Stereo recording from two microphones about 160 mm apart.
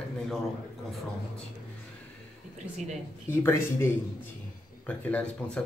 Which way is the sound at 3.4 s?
15° left (ahead or behind).